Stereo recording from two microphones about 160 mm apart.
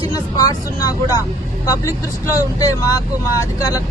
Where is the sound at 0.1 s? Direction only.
25° left (ahead or behind).